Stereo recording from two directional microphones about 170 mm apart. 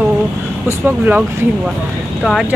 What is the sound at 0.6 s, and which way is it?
Speech, 10° right (ahead or behind).